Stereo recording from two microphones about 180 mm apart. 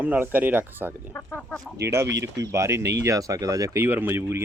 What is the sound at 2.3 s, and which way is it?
Speech, 20° right (ahead or behind).